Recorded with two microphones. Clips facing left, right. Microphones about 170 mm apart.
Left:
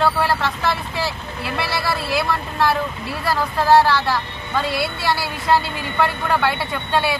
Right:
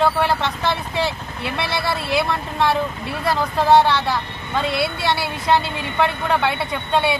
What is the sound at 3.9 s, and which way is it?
Speech, centre (ahead or behind).